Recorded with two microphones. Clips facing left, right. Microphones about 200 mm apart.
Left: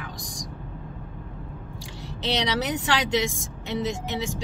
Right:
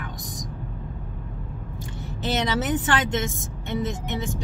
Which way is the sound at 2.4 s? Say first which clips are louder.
Right 2 dB; 80° left.